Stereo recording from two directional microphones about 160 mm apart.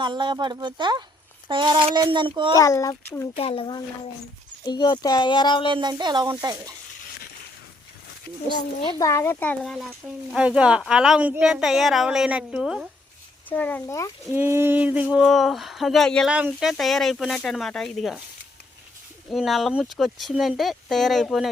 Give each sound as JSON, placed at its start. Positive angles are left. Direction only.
{"t": 0.0, "sound": "speech", "side_deg": -30}
{"t": 2.6, "sound": "speech", "side_deg": 20}
{"t": 3.3, "sound": "speech", "side_deg": 35}
{"t": 5.6, "sound": "speech", "side_deg": -30}
{"t": 9.0, "sound": "speech", "side_deg": 20}
{"t": 10.3, "sound": "speech", "side_deg": -5}
{"t": 13.5, "sound": "speech", "side_deg": 10}
{"t": 14.3, "sound": "a sound", "side_deg": -15}
{"t": 15.1, "sound": "speech", "side_deg": 0}
{"t": 19.3, "sound": "speech", "side_deg": 0}